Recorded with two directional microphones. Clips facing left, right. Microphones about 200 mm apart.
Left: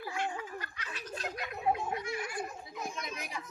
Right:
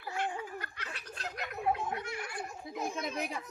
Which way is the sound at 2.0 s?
60° right (ahead or behind).